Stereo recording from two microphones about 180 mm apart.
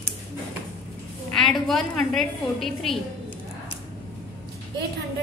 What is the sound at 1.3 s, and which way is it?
A woman's voice, centre (ahead or behind).